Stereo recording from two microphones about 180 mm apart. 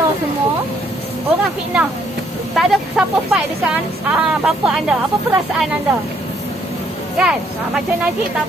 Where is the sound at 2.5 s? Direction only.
Centre (ahead or behind).